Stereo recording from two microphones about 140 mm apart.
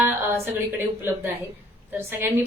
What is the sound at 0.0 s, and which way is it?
A woman's voice, 15° right (ahead or behind).